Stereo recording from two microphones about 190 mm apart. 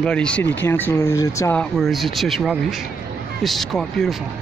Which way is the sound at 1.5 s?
Centre (ahead or behind).